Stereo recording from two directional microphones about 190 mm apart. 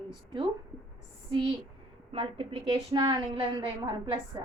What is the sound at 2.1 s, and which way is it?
A woman's voice, 25° right (ahead or behind).